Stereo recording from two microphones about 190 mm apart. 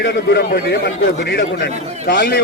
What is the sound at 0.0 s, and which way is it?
A man's voice, 60° left (ahead or behind).